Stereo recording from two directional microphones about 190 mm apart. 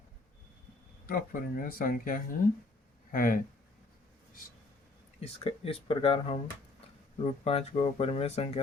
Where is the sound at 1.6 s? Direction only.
50° left (ahead or behind).